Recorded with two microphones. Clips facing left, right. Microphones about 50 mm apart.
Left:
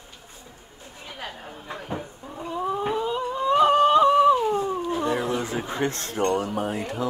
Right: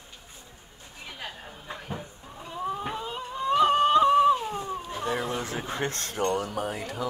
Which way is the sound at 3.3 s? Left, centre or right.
Left.